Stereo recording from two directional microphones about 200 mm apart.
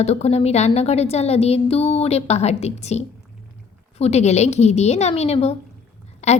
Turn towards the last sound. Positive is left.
turn(degrees=35)  # may be behind; listen again after turning